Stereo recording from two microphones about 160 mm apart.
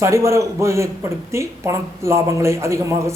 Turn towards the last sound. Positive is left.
turn(degrees=-20)  # may be behind; listen again after turning